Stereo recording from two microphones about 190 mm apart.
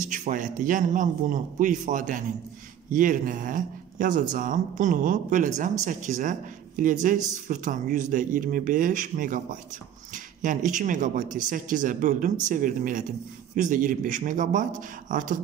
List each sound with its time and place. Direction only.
0.0 s speech: 45° right (ahead or behind)